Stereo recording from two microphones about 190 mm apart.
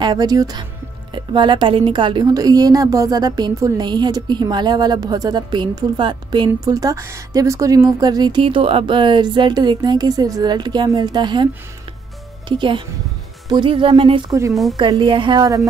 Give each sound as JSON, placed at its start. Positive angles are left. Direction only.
{"t": 0.0, "sound": "speech", "side_deg": -20}
{"t": 12.4, "sound": "speech", "side_deg": -25}
{"t": 14.5, "sound": "a woman's voice", "side_deg": 0}
{"t": 14.8, "sound": "speech", "side_deg": -25}